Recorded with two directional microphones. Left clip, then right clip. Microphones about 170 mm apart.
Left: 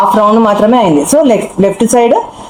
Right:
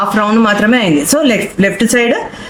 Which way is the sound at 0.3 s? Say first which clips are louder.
Left 4 dB; 45° right (ahead or behind).